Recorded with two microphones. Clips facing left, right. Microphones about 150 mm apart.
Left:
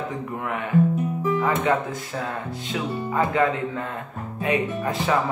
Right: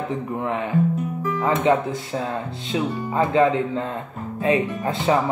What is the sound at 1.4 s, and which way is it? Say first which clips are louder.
Speech: right 6 dB; 25° right (ahead or behind).